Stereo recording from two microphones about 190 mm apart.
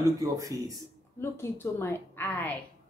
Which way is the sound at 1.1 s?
15° left (ahead or behind).